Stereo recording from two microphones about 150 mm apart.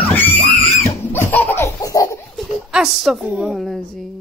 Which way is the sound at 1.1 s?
15° left (ahead or behind).